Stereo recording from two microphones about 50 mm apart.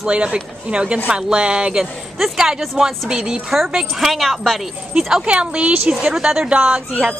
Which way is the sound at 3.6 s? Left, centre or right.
Centre.